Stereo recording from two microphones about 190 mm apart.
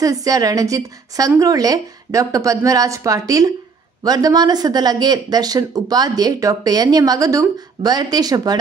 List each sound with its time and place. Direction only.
0.0 s a woman's voice: 20° right (ahead or behind)